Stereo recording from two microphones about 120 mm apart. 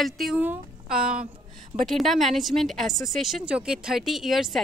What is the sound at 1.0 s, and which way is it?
Speech, 55° right (ahead or behind).